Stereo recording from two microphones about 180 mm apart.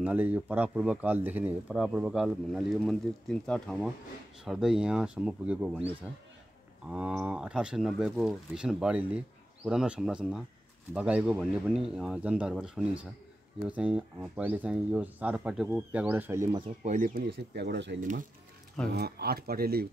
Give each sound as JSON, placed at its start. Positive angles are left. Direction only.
{"t": 0.0, "sound": "speech", "side_deg": -10}
{"t": 6.9, "sound": "speech", "side_deg": -5}
{"t": 16.8, "sound": "speech", "side_deg": -50}
{"t": 18.9, "sound": "speech", "side_deg": -65}